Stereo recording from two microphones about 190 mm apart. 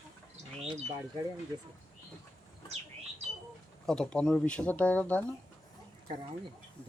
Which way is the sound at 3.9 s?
5° left (ahead or behind).